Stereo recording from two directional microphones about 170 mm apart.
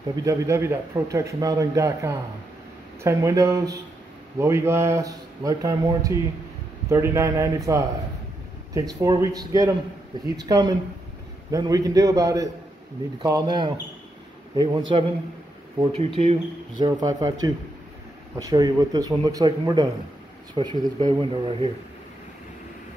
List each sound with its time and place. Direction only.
0.1 s a man's voice: 20° right (ahead or behind); by 16.3 s 35° right (ahead or behind)
16.8 s a man's voice: 25° right (ahead or behind)